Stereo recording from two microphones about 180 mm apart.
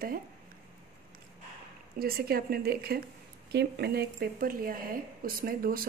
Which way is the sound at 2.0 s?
55° right (ahead or behind).